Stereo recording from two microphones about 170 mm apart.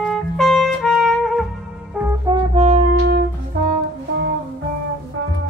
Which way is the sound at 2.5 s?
40° right (ahead or behind).